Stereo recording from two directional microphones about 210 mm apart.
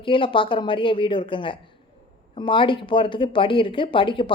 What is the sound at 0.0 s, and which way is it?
Speech, 25° left (ahead or behind).